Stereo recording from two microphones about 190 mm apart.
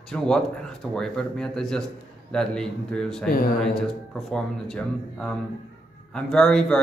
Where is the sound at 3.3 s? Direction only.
50° left (ahead or behind).